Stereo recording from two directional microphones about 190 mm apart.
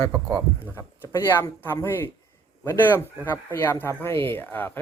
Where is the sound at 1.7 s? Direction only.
10° left (ahead or behind).